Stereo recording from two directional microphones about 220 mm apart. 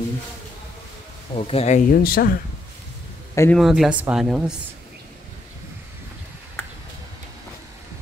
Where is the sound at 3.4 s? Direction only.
5° left (ahead or behind).